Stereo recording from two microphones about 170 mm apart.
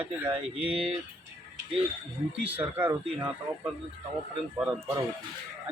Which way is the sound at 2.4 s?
10° right (ahead or behind).